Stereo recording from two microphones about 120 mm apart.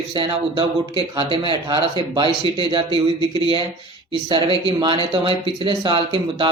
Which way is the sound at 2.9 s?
45° right (ahead or behind).